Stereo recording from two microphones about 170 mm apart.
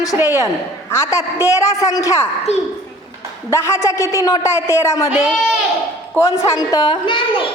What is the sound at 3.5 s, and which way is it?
A man's voice, 15° left (ahead or behind).